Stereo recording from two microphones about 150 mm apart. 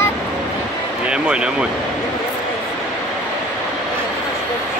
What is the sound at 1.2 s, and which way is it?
Speech, 5° right (ahead or behind).